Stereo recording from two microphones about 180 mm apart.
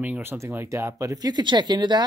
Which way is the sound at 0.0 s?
10° right (ahead or behind).